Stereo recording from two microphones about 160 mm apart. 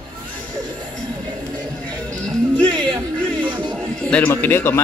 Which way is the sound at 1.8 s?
5° left (ahead or behind).